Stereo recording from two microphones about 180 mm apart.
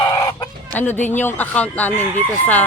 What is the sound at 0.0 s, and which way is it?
Chicken, 20° left (ahead or behind).